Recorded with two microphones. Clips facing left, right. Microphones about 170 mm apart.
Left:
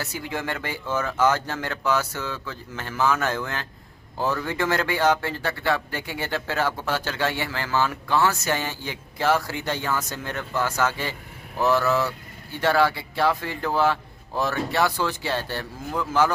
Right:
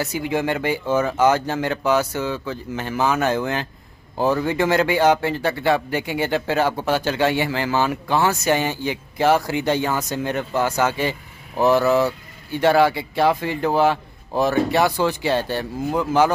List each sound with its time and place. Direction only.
0.0 s speech: 15° right (ahead or behind)